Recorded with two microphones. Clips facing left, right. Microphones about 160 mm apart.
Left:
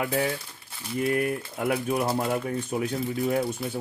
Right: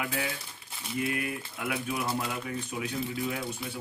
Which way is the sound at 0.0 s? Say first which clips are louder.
Left 7 dB; 35° left (ahead or behind).